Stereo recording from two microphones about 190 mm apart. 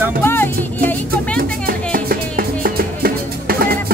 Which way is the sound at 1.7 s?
50° right (ahead or behind).